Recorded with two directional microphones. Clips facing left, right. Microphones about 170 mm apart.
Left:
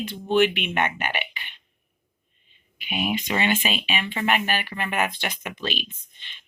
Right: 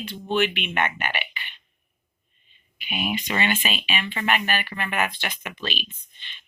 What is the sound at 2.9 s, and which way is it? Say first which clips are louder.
Speech: left 2 dB; 25° left (ahead or behind).